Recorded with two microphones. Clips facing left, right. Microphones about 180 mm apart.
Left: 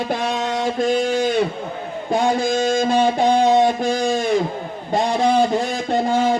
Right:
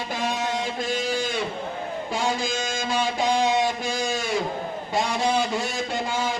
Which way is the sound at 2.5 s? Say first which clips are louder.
Left 11 dB; 35° left (ahead or behind).